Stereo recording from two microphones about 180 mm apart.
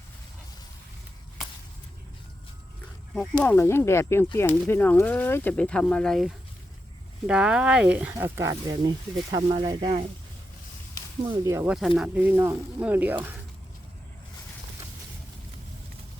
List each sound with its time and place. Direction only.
3.2 s speech: 10° left (ahead or behind); by 10.0 s 25° right (ahead or behind)
11.3 s speech: 15° right (ahead or behind)